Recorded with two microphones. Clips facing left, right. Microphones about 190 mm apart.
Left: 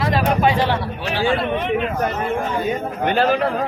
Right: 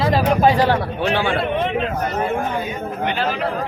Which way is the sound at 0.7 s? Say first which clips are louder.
Right 4 dB; 55° right (ahead or behind).